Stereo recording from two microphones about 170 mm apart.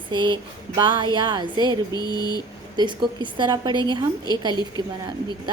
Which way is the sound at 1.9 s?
25° left (ahead or behind).